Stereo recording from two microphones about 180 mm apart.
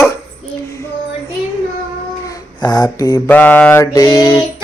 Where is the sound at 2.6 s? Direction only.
20° left (ahead or behind).